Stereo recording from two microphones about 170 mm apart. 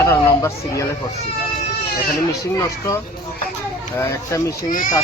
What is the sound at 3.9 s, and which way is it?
Speech, 15° left (ahead or behind).